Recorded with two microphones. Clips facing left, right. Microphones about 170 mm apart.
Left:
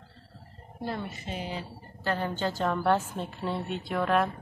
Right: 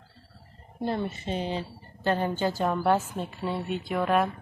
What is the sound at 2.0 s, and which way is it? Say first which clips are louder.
Speech: right 4 dB; 15° right (ahead or behind).